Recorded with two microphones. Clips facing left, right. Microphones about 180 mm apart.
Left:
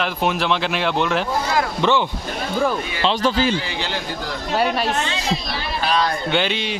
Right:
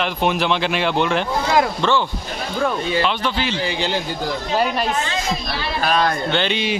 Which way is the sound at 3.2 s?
40° left (ahead or behind).